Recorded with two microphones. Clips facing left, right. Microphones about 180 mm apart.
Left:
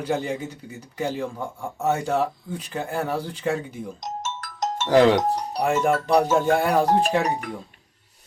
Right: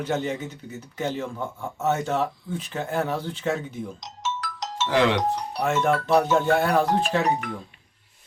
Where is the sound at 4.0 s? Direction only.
50° left (ahead or behind).